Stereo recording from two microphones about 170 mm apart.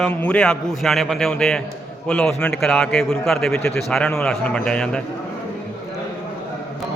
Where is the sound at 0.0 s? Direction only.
10° left (ahead or behind).